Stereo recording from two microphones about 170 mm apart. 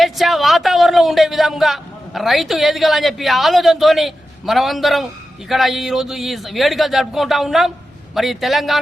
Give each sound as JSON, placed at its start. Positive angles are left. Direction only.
{"t": 0.0, "sound": "a man's voice", "side_deg": 0}